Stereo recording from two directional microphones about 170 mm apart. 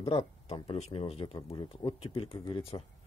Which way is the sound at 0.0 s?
35° left (ahead or behind).